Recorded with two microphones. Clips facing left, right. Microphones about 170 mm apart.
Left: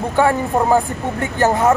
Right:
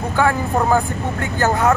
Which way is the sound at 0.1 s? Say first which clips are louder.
Left 2 dB; 25° left (ahead or behind).